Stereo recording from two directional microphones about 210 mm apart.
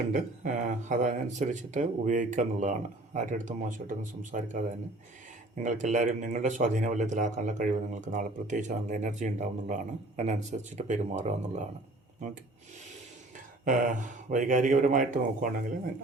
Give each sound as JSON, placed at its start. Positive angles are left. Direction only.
{"t": 0.1, "sound": "speech", "side_deg": -35}
{"t": 5.6, "sound": "speech", "side_deg": -35}
{"t": 13.3, "sound": "speech", "side_deg": -40}